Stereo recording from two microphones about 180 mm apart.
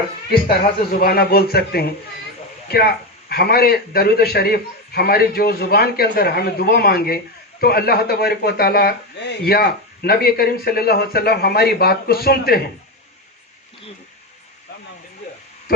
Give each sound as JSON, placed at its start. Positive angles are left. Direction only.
{"t": 0.9, "sound": "speech", "side_deg": 60}